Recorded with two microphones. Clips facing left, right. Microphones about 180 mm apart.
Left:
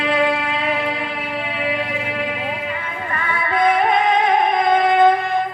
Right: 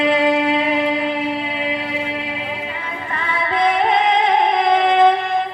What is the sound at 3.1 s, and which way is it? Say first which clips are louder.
Music: even; 25° right (ahead or behind).